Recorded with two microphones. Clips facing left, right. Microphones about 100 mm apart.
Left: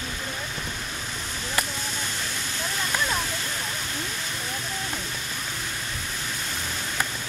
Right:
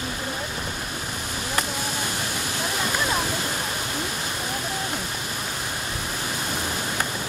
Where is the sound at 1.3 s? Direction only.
10° right (ahead or behind).